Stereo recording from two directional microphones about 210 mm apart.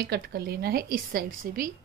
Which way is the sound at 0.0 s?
50° right (ahead or behind).